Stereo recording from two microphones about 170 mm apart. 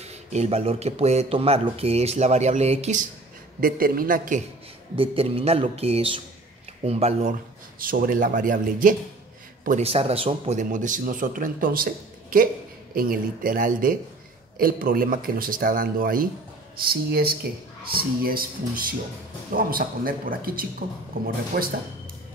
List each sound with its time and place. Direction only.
0.0 s a man's voice: 40° right (ahead or behind)
3.6 s speech: 55° right (ahead or behind)
4.9 s a man's voice: 35° right (ahead or behind)
7.8 s speech: 55° right (ahead or behind)
9.7 s a man's voice: 40° right (ahead or behind); by 21.7 s 60° right (ahead or behind)